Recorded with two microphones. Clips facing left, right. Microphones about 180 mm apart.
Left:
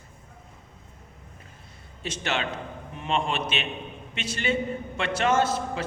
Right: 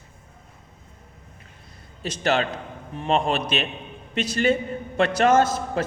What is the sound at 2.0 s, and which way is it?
A man's voice, 40° right (ahead or behind).